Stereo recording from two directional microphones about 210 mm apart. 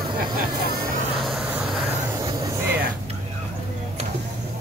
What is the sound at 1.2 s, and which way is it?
Vehicle, centre (ahead or behind).